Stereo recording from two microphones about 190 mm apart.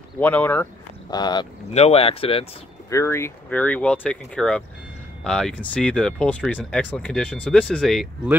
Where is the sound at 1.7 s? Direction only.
35° left (ahead or behind).